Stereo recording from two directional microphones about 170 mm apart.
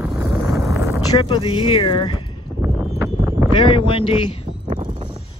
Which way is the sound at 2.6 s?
15° right (ahead or behind).